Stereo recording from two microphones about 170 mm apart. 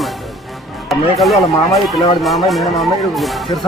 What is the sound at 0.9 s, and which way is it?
Speech, centre (ahead or behind).